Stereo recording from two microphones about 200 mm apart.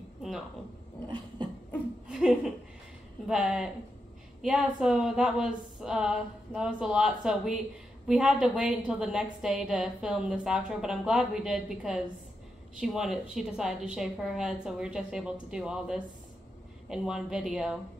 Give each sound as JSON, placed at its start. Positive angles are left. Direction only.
{"t": 1.0, "sound": "a sound", "side_deg": -25}
{"t": 2.0, "sound": "chuckle", "side_deg": -5}
{"t": 3.3, "sound": "a woman's voice", "side_deg": -5}